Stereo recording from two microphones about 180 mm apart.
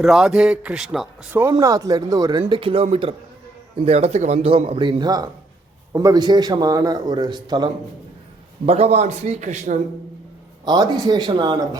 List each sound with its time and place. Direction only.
0.0 s speech: 5° right (ahead or behind)
1.5 s a man's voice: 20° right (ahead or behind)
8.6 s speech: 35° right (ahead or behind)
10.7 s a man's voice: 20° right (ahead or behind)